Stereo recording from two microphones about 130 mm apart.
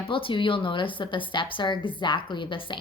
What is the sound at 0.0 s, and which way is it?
Speech, 40° left (ahead or behind).